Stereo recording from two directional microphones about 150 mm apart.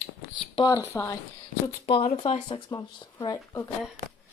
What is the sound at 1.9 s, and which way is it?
Speech, 40° left (ahead or behind).